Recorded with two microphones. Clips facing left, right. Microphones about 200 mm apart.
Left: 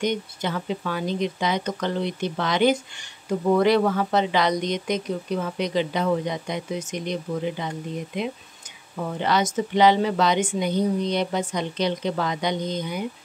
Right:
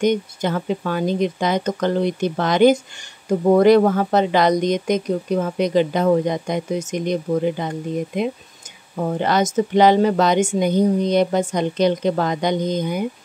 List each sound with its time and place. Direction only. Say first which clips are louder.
0.0 s speech: right 7 dB; 45° right (ahead or behind)